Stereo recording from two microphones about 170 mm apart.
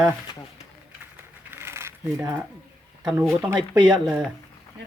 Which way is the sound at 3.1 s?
5° right (ahead or behind).